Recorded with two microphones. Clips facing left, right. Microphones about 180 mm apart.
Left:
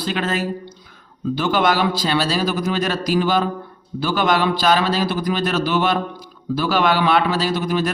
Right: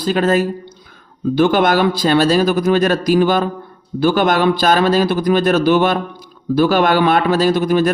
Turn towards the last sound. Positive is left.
turn(degrees=-50)  # may be behind; listen again after turning